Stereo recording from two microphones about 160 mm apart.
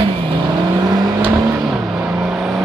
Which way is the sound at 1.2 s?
10° right (ahead or behind).